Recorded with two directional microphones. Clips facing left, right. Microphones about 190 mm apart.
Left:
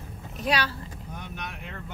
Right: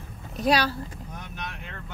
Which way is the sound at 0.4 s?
40° right (ahead or behind).